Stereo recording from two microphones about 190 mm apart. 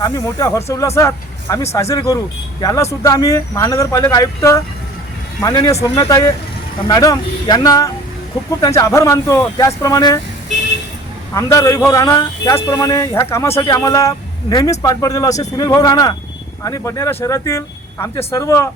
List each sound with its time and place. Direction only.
0.0 s speech: 15° left (ahead or behind)
11.3 s speech: 15° left (ahead or behind)